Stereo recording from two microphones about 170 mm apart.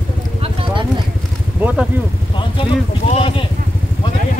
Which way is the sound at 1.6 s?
10° right (ahead or behind).